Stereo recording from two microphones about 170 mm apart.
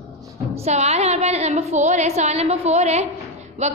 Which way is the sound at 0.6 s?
40° right (ahead or behind).